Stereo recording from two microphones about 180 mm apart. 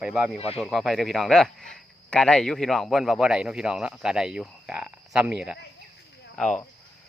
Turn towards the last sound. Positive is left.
turn(degrees=5)  # may be behind; listen again after turning